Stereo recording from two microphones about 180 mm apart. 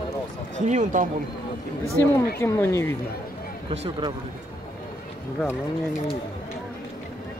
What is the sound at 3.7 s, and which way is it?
Speech, 35° right (ahead or behind).